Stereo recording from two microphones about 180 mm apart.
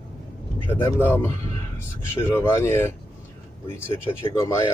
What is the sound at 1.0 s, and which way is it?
A man's voice, 10° left (ahead or behind).